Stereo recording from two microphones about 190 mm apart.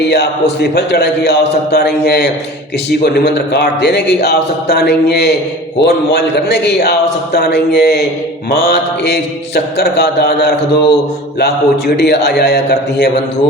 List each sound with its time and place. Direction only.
0.1 s a man's voice: 60° left (ahead or behind)